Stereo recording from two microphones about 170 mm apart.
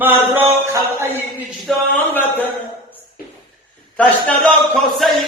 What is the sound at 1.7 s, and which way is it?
Speech, centre (ahead or behind).